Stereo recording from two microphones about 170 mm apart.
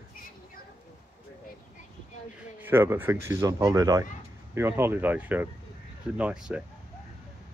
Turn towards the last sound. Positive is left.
turn(degrees=-5)  # may be behind; listen again after turning